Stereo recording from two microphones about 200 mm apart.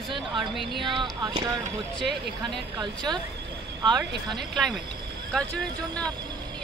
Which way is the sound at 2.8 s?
20° right (ahead or behind).